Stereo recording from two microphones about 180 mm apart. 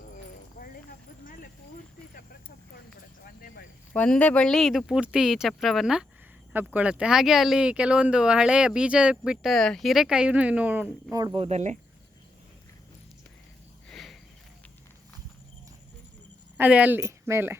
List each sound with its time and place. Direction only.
0.6 s clip-clop: 45° left (ahead or behind)
3.2 s a sound: 50° left (ahead or behind)
3.9 s speech: 10° left (ahead or behind); by 11.2 s 10° right (ahead or behind)
11.2 s speech: 20° right (ahead or behind)
11.4 s speech: 40° right (ahead or behind)
13.9 s cricket: centre (ahead or behind)
16.6 s speech: 10° right (ahead or behind)